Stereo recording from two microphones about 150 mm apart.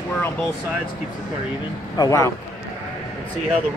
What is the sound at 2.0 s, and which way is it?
Speech, 20° left (ahead or behind).